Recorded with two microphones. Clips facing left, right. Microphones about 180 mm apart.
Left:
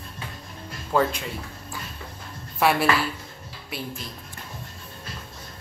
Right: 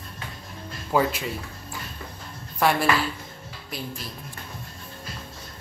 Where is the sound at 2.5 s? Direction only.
5° left (ahead or behind).